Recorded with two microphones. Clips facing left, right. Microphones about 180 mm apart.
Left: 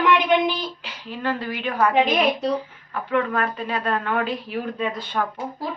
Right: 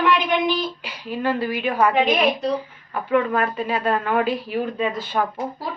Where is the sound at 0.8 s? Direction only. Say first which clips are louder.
Right 3 dB; 10° right (ahead or behind).